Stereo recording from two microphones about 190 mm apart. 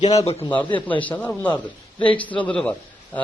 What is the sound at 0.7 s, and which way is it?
Speech, 10° left (ahead or behind).